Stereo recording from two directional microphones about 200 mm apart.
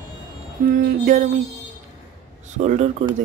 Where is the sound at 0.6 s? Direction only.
40° right (ahead or behind).